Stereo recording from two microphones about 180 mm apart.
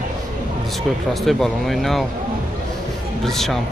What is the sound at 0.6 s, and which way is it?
Speech, centre (ahead or behind).